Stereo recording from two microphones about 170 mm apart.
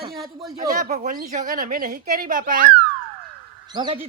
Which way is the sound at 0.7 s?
50° right (ahead or behind).